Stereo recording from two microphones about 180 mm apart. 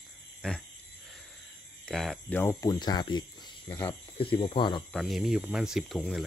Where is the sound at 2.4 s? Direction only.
15° left (ahead or behind).